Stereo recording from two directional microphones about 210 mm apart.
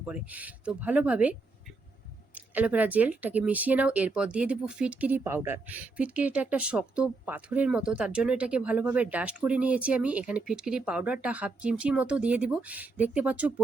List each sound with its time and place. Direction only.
0.0 s speech: 5° right (ahead or behind)